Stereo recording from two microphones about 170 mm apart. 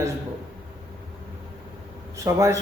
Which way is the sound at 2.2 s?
20° right (ahead or behind).